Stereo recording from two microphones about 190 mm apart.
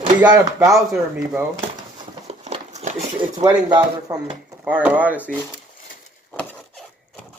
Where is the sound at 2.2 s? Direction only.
35° right (ahead or behind).